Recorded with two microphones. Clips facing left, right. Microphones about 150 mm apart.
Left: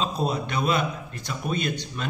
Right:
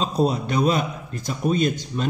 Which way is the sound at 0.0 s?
40° right (ahead or behind).